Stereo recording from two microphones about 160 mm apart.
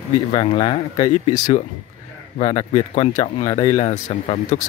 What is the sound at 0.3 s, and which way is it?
Speech, 30° left (ahead or behind).